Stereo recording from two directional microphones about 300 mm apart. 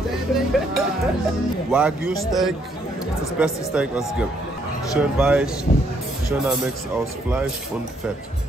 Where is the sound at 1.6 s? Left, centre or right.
Centre.